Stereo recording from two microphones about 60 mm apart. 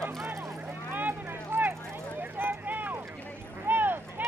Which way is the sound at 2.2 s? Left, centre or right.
Right.